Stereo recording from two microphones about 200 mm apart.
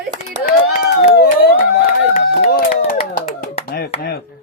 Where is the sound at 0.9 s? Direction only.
55° left (ahead or behind).